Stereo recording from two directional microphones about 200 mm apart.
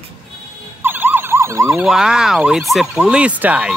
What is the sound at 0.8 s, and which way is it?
Emergency vehicle, 10° right (ahead or behind).